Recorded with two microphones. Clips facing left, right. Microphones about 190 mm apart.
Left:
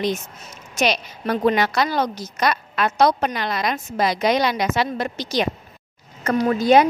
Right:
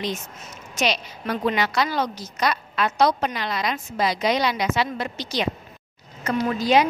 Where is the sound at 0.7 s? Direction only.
45° left (ahead or behind).